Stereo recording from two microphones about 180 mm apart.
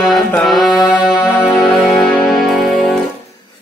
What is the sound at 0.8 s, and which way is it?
Music, 25° left (ahead or behind).